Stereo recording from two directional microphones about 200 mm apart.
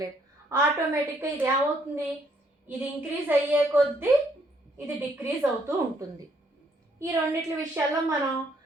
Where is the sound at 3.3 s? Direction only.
10° right (ahead or behind).